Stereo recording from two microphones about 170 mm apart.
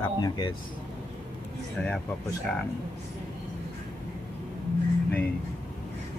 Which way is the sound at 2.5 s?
5° left (ahead or behind).